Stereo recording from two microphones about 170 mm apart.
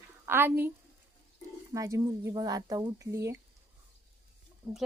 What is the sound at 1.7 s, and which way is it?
Speech, 20° right (ahead or behind).